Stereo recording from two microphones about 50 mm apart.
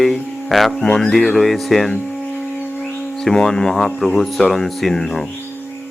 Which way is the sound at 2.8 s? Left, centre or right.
Centre.